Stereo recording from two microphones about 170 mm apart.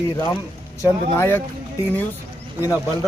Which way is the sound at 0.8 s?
15° left (ahead or behind).